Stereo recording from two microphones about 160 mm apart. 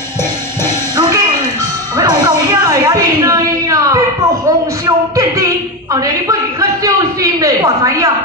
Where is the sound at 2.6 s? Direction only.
20° right (ahead or behind).